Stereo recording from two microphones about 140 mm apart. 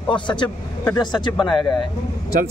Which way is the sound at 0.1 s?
35° left (ahead or behind).